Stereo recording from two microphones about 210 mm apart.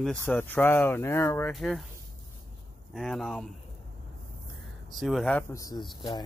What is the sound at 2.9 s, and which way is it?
Speech, centre (ahead or behind).